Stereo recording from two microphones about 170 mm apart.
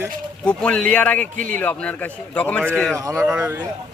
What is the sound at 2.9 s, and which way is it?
Speech, 15° right (ahead or behind).